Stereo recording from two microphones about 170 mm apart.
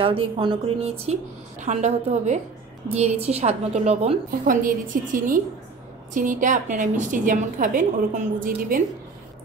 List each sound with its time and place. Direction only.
0.0 s a woman's voice: 30° right (ahead or behind); by 8.8 s 55° right (ahead or behind)